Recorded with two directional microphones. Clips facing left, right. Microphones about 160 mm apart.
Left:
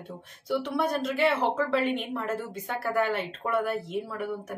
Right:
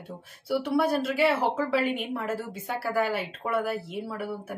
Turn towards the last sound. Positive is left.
turn(degrees=-5)  # may be behind; listen again after turning